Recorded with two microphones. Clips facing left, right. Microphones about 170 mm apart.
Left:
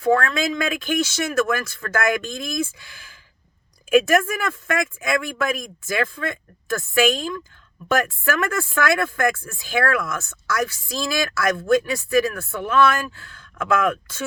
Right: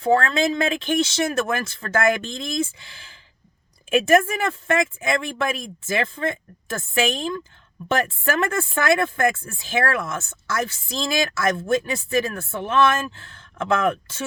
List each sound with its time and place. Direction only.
0.0 s speech: 30° right (ahead or behind)